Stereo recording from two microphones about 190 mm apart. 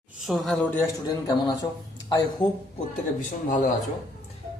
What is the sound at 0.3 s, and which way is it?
Speech, centre (ahead or behind).